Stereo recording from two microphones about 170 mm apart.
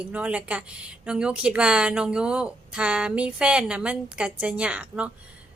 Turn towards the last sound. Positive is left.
turn(degrees=-5)  # may be behind; listen again after turning